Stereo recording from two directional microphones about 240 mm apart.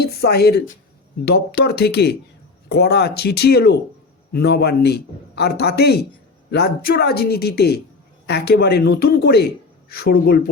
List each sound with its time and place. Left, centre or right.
0.0 s a man's voice: left